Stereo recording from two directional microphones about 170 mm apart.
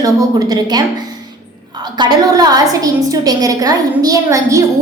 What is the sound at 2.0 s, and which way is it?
A woman's voice, 25° right (ahead or behind).